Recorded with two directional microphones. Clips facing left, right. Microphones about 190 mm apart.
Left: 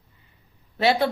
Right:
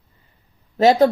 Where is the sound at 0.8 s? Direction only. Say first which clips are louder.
Right 7 dB; 40° right (ahead or behind).